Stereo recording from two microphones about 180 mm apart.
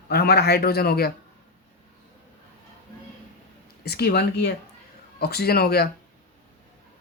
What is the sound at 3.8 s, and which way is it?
Speech, 65° left (ahead or behind).